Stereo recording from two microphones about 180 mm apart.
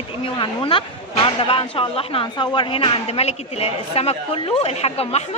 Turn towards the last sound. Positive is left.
turn(degrees=35)  # may be behind; listen again after turning